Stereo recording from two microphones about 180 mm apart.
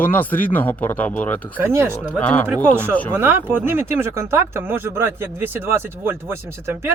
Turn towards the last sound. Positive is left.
turn(degrees=-15)  # may be behind; listen again after turning